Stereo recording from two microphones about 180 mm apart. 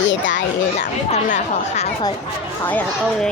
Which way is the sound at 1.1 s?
40° left (ahead or behind).